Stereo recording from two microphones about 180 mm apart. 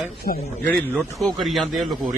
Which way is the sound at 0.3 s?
50° left (ahead or behind).